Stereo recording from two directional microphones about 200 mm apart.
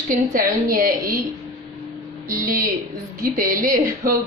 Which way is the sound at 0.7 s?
45° right (ahead or behind).